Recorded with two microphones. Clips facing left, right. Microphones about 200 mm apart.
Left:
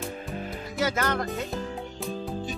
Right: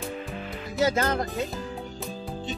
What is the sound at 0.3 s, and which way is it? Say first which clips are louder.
Music: left 1 dB; 45° left (ahead or behind).